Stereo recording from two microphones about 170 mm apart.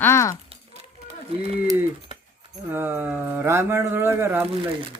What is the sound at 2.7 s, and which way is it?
A man's voice, 10° right (ahead or behind).